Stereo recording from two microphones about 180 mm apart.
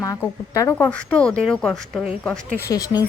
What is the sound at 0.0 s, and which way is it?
Speech, 15° left (ahead or behind).